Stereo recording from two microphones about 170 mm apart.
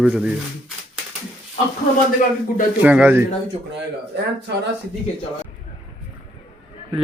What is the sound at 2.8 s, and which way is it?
Speech, 10° right (ahead or behind).